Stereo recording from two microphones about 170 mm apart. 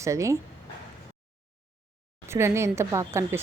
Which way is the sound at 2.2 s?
15° right (ahead or behind).